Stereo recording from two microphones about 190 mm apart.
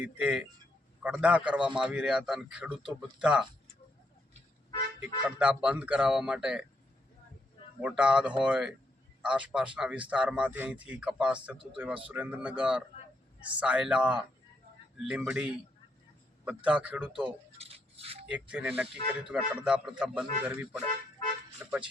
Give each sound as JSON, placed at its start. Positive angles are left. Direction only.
{"t": 0.0, "sound": "a man's voice", "side_deg": -5}
{"t": 5.2, "sound": "speech", "side_deg": -5}
{"t": 7.8, "sound": "a man's voice", "side_deg": -5}
{"t": 16.6, "sound": "speech", "side_deg": -5}
{"t": 17.6, "sound": "a sound", "side_deg": -30}
{"t": 18.3, "sound": "a man's voice", "side_deg": -5}